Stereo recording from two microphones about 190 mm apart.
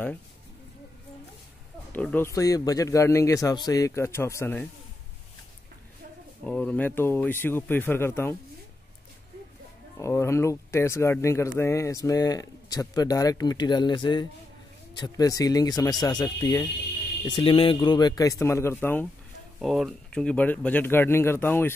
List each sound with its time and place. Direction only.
1.9 s speech: 10° left (ahead or behind)
6.4 s speech: 5° left (ahead or behind)
9.9 s speech: 15° left (ahead or behind)
19.6 s speech: centre (ahead or behind)